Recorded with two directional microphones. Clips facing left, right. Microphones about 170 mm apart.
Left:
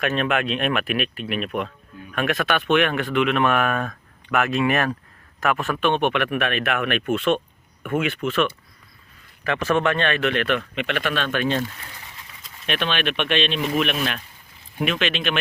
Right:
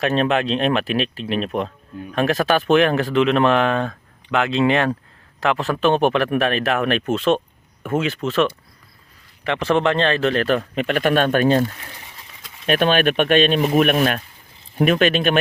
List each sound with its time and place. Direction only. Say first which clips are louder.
0.0 s a man's voice: right 4 dB; 35° right (ahead or behind)
5.9 s a man's voice: right 5 dB; 35° right (ahead or behind)